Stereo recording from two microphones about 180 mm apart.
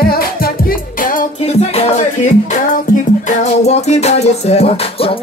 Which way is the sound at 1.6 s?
35° left (ahead or behind).